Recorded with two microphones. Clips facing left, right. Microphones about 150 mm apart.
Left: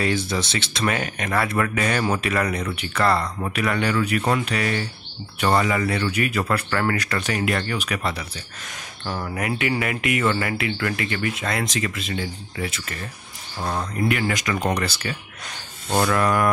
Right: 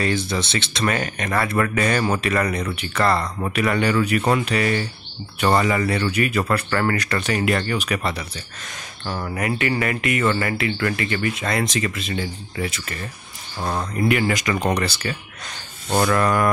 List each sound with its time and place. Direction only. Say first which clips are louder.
0.0 s speech: right 1 dB; 10° left (ahead or behind)